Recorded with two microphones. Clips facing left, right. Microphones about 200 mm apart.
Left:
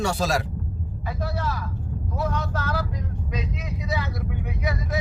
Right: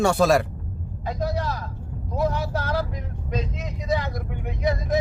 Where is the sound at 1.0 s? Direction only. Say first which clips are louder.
Right 3 dB; 15° right (ahead or behind).